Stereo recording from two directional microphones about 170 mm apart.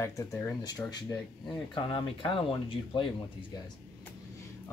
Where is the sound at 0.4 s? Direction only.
20° left (ahead or behind).